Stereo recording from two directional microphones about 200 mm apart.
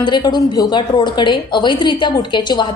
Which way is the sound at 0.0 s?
20° left (ahead or behind).